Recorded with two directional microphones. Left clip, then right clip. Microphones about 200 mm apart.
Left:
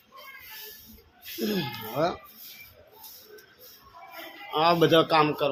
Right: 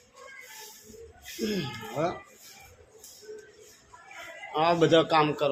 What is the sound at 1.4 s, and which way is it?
Speech, 30° left (ahead or behind).